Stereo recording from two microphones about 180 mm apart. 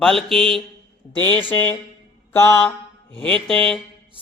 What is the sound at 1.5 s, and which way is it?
Speech, 10° left (ahead or behind).